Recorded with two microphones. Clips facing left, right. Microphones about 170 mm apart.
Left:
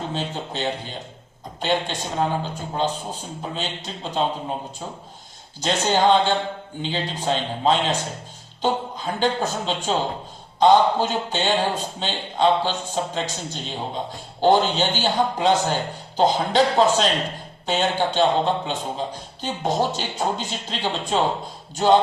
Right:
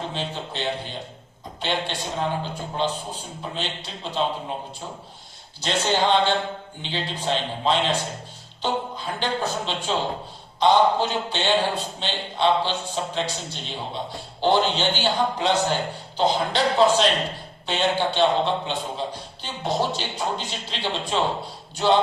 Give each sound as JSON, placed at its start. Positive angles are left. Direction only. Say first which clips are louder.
{"t": 0.1, "sound": "a man's voice", "louder": "left 2 dB", "side_deg": 45}
{"t": 5.5, "sound": "a man's voice", "louder": "left 2 dB", "side_deg": 45}